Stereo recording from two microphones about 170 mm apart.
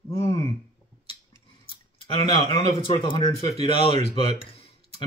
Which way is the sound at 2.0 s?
30° left (ahead or behind).